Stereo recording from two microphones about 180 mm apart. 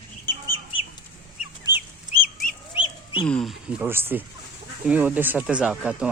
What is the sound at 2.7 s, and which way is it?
Duck, 30° left (ahead or behind).